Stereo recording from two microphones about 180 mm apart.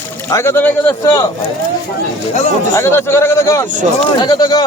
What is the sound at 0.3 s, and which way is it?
Speech, 15° left (ahead or behind).